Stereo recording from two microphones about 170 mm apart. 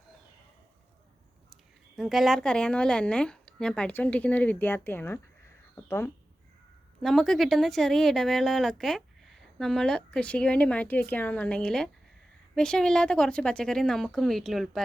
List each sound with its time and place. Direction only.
2.0 s a woman's voice: centre (ahead or behind)
7.0 s speech: centre (ahead or behind)